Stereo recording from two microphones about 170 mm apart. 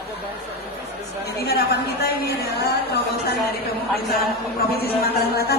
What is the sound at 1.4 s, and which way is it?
Speech, 70° left (ahead or behind).